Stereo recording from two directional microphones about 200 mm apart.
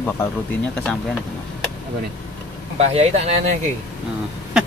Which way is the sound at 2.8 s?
30° right (ahead or behind).